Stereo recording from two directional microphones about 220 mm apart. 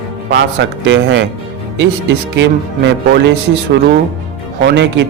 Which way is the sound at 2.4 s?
55° right (ahead or behind).